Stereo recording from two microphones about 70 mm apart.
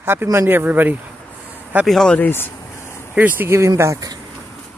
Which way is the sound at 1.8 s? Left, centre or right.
Centre.